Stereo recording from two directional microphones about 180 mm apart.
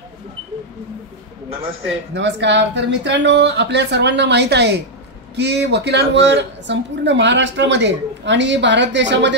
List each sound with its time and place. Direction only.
2.1 s a woman's voice: 80° right